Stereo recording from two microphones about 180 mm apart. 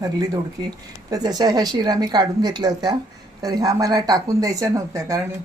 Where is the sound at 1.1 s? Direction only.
20° right (ahead or behind).